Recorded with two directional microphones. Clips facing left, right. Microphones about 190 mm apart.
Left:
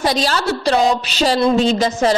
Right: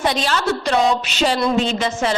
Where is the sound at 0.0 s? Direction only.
35° left (ahead or behind).